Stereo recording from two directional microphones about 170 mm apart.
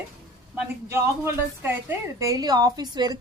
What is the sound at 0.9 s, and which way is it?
A woman's voice, 15° right (ahead or behind).